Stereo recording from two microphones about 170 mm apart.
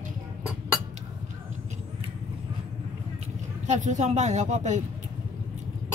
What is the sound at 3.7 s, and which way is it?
Speech, 45° right (ahead or behind).